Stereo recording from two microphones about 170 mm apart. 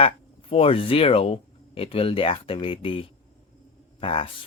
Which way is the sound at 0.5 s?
35° left (ahead or behind).